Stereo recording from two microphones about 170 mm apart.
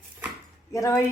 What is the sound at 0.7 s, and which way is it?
Speech, 20° left (ahead or behind).